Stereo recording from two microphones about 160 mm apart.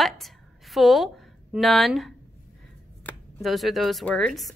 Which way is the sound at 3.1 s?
10° left (ahead or behind).